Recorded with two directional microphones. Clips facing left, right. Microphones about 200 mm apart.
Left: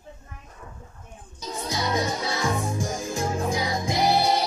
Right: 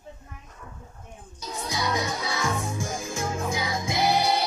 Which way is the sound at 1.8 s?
25° left (ahead or behind).